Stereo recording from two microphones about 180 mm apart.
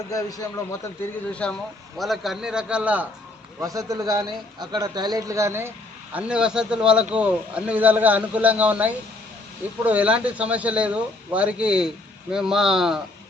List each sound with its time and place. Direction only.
0.1 s a man's voice: 20° left (ahead or behind)
1.3 s a man's voice: 5° left (ahead or behind)
3.6 s a man's voice: 20° right (ahead or behind); by 13.0 s centre (ahead or behind)